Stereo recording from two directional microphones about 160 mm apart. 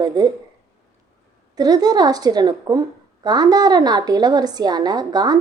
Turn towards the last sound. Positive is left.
turn(degrees=-25)  # may be behind; listen again after turning